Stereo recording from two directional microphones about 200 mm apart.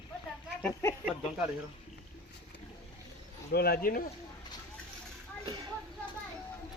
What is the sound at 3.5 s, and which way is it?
Speech, 50° left (ahead or behind).